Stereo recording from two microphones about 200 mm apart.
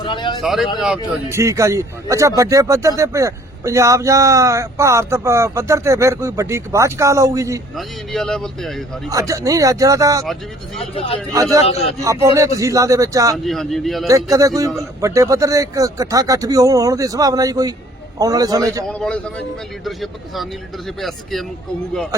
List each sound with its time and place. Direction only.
0.0 s speech: 25° left (ahead or behind)
0.4 s speech: centre (ahead or behind)
1.3 s speech: 15° right (ahead or behind)
7.8 s speech: centre (ahead or behind)
9.0 s speech: 15° right (ahead or behind)
11.3 s speech: 15° right (ahead or behind)
11.6 s speech: 30° left (ahead or behind)
12.0 s speech: 15° right (ahead or behind)
13.3 s speech: centre (ahead or behind)
14.1 s speech: 15° right (ahead or behind)
18.9 s speech: 5° left (ahead or behind)